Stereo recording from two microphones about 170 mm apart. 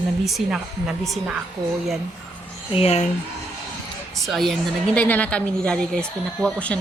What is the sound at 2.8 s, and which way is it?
Speech, 40° left (ahead or behind).